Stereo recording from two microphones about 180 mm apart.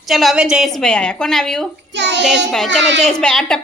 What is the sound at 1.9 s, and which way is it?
Child singing, 75° right (ahead or behind).